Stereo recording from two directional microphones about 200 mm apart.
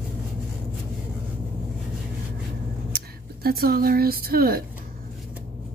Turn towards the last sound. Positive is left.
turn(degrees=-50)  # may be behind; listen again after turning